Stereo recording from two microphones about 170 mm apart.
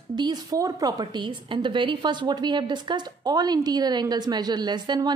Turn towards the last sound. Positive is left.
turn(degrees=-25)  # may be behind; listen again after turning